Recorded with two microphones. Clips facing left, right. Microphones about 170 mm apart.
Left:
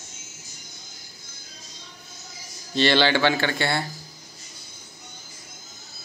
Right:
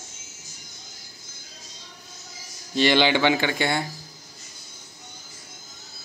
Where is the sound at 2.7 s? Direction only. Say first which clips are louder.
Even; 15° right (ahead or behind).